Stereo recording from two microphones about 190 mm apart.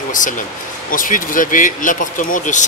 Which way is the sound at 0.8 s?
45° left (ahead or behind).